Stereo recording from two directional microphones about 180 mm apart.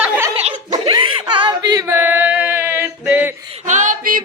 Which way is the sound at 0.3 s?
35° right (ahead or behind).